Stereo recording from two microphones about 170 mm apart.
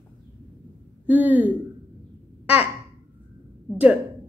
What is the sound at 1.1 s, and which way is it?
Speech, 10° right (ahead or behind).